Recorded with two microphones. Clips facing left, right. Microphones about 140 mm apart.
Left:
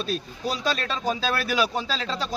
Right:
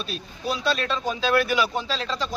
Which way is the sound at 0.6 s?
40° left (ahead or behind).